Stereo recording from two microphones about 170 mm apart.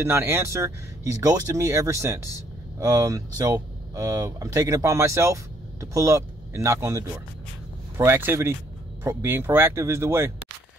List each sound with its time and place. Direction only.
0.0 s speech: 15° right (ahead or behind)